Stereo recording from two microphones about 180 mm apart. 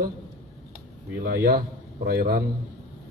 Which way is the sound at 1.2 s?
60° right (ahead or behind).